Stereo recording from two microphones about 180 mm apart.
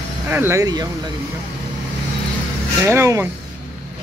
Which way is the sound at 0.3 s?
15° right (ahead or behind).